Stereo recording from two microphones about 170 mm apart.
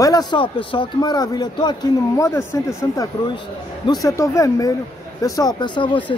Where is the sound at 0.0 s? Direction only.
25° left (ahead or behind).